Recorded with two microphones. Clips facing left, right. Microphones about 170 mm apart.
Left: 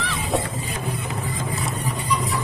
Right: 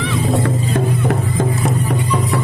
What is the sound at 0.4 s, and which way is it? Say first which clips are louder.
Music: right 11 dB; 65° right (ahead or behind).